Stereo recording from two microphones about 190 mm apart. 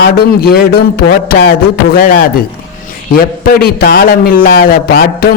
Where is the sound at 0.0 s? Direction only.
55° left (ahead or behind).